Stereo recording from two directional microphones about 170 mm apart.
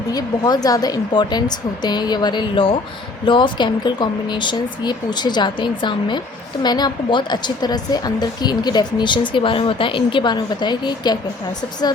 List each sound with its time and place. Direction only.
0.1 s speech: 20° left (ahead or behind)